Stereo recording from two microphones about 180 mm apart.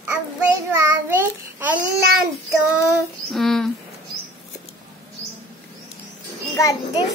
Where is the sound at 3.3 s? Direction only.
Centre (ahead or behind).